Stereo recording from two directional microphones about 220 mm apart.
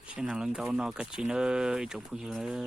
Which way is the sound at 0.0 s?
5° right (ahead or behind).